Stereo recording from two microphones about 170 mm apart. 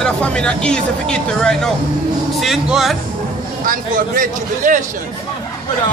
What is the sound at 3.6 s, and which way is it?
Speech, 55° right (ahead or behind).